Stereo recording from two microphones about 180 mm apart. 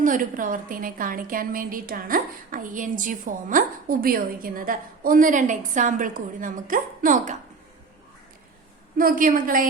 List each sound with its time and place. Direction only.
0.0 s a woman's voice: 50° right (ahead or behind)
9.0 s a woman's voice: 50° right (ahead or behind)